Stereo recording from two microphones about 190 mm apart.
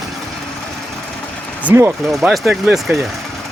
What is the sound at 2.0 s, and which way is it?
Speech, centre (ahead or behind).